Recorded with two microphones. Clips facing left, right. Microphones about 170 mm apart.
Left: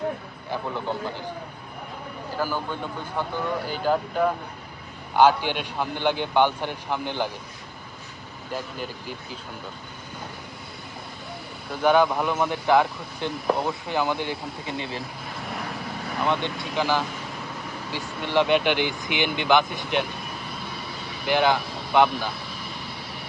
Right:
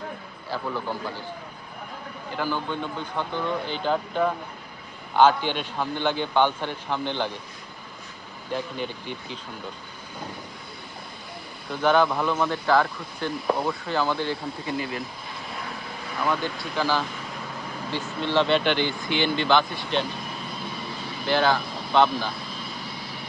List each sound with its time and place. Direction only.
0.5 s speech: 20° left (ahead or behind)
2.3 s a man's voice: 5° left (ahead or behind)
8.5 s speech: 5° left (ahead or behind)
11.8 s a man's voice: 10° left (ahead or behind); by 15.0 s 25° left (ahead or behind)
16.2 s speech: 25° left (ahead or behind)
18.2 s a man's voice: 15° left (ahead or behind)
21.2 s speech: 15° left (ahead or behind)